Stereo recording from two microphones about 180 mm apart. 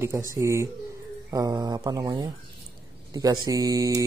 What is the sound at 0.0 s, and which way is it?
Speech, 15° right (ahead or behind).